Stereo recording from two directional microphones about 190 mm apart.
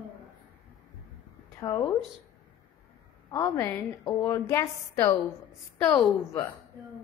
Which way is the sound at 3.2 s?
15° left (ahead or behind).